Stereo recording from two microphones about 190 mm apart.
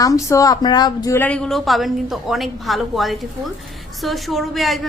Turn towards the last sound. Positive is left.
turn(degrees=0)  # may be behind; listen again after turning